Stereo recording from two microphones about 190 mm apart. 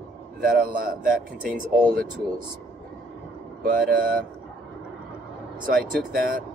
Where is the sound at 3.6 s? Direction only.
50° right (ahead or behind).